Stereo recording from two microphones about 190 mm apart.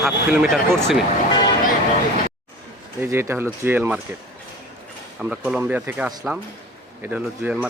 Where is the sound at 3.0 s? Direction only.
15° right (ahead or behind).